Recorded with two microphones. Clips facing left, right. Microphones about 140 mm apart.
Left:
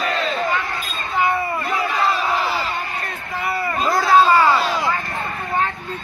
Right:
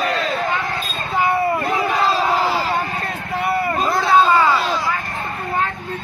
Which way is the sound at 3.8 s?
Centre (ahead or behind).